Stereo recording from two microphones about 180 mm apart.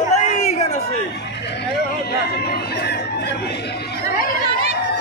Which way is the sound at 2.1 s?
60° left (ahead or behind).